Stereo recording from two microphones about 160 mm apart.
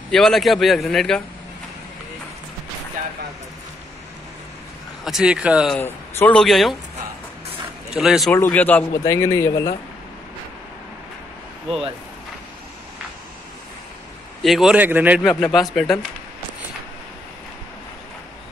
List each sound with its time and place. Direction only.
0.1 s a man's voice: centre (ahead or behind)
5.0 s a man's voice: 5° right (ahead or behind)
5.8 s a man's voice: 15° left (ahead or behind)
7.9 s a man's voice: 5° right (ahead or behind)
8.3 s a man's voice: 10° left (ahead or behind)
14.4 s a man's voice: centre (ahead or behind)
15.2 s a man's voice: centre (ahead or behind)